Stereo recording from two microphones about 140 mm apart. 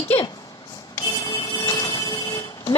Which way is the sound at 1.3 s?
30° left (ahead or behind).